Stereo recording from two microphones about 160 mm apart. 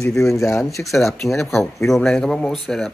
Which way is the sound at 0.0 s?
20° left (ahead or behind).